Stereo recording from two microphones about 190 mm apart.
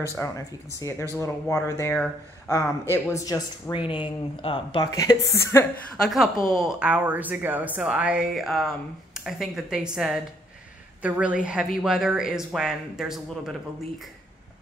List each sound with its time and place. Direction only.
0.0 s speech: 15° left (ahead or behind); by 4.6 s 30° left (ahead or behind)
4.9 s speech: 15° left (ahead or behind)
6.0 s a woman's voice: centre (ahead or behind)